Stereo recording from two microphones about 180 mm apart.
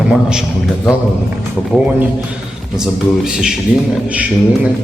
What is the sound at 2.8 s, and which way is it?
A man's voice, 5° right (ahead or behind).